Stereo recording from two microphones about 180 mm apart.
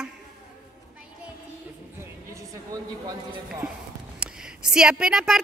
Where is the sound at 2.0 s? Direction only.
15° right (ahead or behind).